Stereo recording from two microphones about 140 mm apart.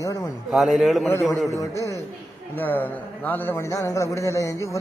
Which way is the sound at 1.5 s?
20° left (ahead or behind).